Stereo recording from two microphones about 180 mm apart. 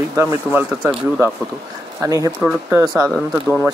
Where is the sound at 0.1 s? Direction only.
20° right (ahead or behind).